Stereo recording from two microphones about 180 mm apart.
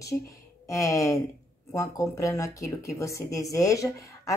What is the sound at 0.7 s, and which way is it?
Speech, 20° left (ahead or behind).